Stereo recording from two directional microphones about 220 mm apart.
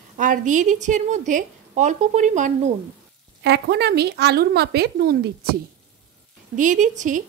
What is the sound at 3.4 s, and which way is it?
A woman's voice, 50° right (ahead or behind).